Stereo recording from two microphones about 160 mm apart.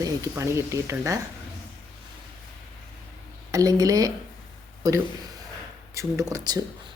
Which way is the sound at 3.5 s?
20° right (ahead or behind).